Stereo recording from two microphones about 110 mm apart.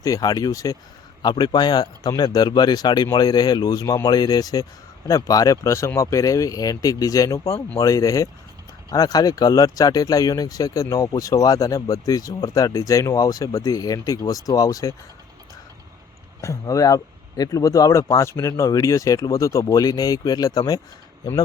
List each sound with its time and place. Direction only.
0.0 s speech: 30° left (ahead or behind)
16.4 s speech: 30° left (ahead or behind)